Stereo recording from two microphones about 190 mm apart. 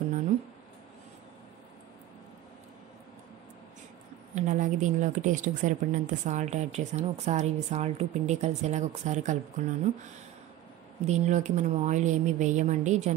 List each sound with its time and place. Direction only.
4.4 s a woman's voice: 40° right (ahead or behind)
11.1 s a woman's voice: 40° right (ahead or behind)